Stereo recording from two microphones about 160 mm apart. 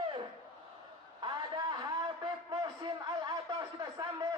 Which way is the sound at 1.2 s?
30° right (ahead or behind).